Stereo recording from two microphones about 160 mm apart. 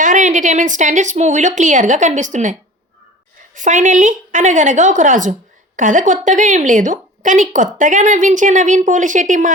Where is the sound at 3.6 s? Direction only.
55° right (ahead or behind).